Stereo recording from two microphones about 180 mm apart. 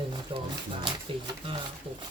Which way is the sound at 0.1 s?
25° right (ahead or behind).